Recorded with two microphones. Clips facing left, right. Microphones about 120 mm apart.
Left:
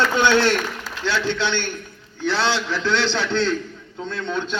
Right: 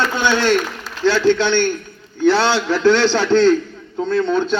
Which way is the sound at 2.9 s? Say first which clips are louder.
Right 9 dB; 45° right (ahead or behind).